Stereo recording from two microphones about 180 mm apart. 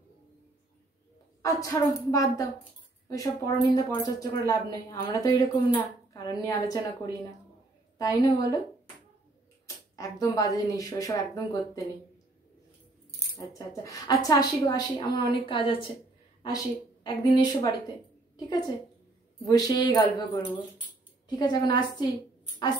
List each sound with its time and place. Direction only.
1.4 s a woman's voice: 20° left (ahead or behind)
8.0 s a woman's voice: 20° left (ahead or behind)
9.7 s a woman's voice: 20° left (ahead or behind)
13.3 s a woman's voice: 20° left (ahead or behind)
19.4 s a woman's voice: 20° left (ahead or behind)